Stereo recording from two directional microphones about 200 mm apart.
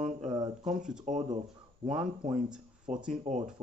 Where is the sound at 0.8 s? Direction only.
40° right (ahead or behind).